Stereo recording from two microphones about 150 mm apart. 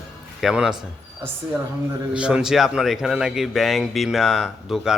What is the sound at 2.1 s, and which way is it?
Speech, 5° right (ahead or behind).